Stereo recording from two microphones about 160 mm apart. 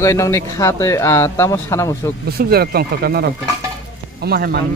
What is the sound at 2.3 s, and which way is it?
Speech, 75° right (ahead or behind).